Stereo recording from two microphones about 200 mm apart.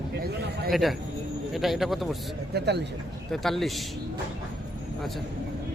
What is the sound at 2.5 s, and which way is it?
Speech, 55° right (ahead or behind).